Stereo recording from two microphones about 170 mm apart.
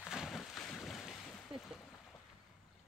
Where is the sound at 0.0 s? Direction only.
5° right (ahead or behind).